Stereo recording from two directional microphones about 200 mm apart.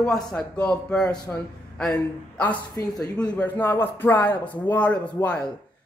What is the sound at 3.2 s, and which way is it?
Speech, 5° left (ahead or behind).